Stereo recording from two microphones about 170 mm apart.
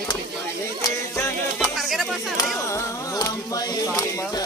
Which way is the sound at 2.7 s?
20° left (ahead or behind).